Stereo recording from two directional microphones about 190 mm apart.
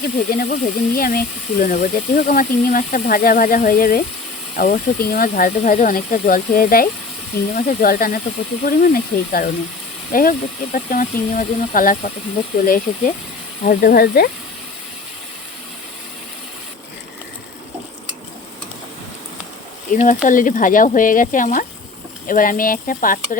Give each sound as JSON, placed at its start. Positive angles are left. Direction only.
{"t": 0.0, "sound": "speech", "side_deg": 45}
{"t": 19.9, "sound": "speech", "side_deg": 45}